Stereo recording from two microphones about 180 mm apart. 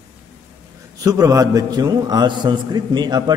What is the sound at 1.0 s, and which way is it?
A man's voice, 20° right (ahead or behind).